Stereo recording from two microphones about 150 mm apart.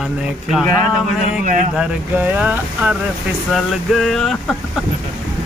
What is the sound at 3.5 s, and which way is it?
Speech, centre (ahead or behind).